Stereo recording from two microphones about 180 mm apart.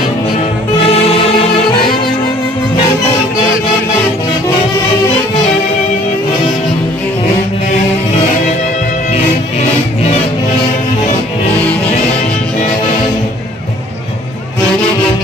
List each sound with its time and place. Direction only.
0.9 s music: 35° left (ahead or behind)
9.1 s music: 35° left (ahead or behind)